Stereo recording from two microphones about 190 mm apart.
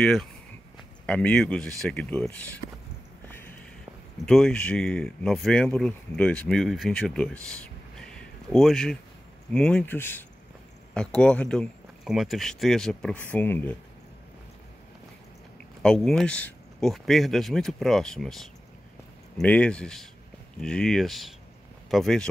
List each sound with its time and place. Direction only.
0.0 s speech: centre (ahead or behind)
4.3 s speech: 5° left (ahead or behind)
15.8 s speech: 5° left (ahead or behind)